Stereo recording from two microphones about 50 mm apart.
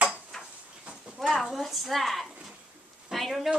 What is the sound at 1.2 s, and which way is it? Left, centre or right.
A woman's voice, centre.